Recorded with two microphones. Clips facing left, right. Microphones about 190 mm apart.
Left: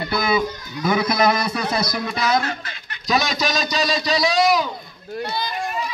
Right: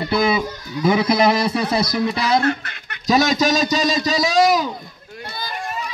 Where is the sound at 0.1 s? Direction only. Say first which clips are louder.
Right 3 dB; 25° right (ahead or behind).